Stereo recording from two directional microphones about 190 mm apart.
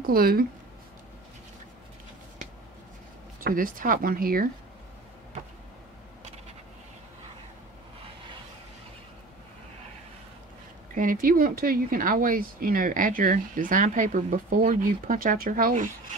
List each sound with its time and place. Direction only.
0.0 s speech: 50° right (ahead or behind)
3.3 s speech: 45° right (ahead or behind)
11.0 s speech: 45° right (ahead or behind)